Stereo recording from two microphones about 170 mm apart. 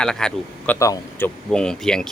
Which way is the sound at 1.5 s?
5° left (ahead or behind).